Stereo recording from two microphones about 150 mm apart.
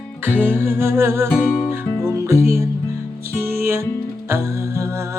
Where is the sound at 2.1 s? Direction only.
20° right (ahead or behind).